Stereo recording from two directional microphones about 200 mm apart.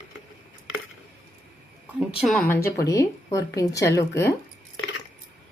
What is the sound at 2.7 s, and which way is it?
Speech, 15° left (ahead or behind).